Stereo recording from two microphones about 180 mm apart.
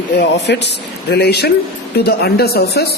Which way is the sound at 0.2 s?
70° left (ahead or behind).